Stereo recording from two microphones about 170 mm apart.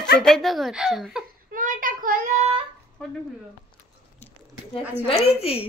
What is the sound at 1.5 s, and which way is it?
Child singing, 50° right (ahead or behind).